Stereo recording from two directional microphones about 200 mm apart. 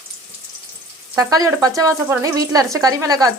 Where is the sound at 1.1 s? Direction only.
15° right (ahead or behind).